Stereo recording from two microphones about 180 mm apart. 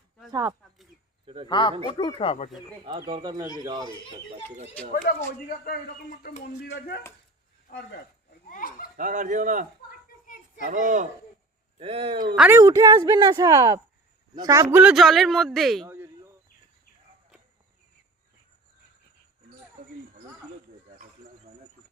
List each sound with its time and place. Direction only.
0.3 s speech: 20° right (ahead or behind)
1.5 s speech: 25° left (ahead or behind)
3.0 s speech: 20° right (ahead or behind)
4.7 s speech: 5° left (ahead or behind)
5.5 s a man's voice: 55° left (ahead or behind)
8.4 s a sound: 50° left (ahead or behind)
9.0 s speech: 45° right (ahead or behind)
11.8 s speech: 35° right (ahead or behind)
12.4 s a man's voice: 15° right (ahead or behind); by 15.9 s centre (ahead or behind)
15.9 s a sound: 15° right (ahead or behind)